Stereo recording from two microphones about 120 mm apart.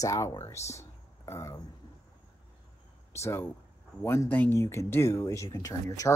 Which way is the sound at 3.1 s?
20° left (ahead or behind).